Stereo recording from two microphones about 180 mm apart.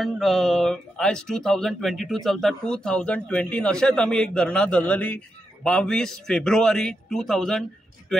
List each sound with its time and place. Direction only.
0.0 s speech: centre (ahead or behind)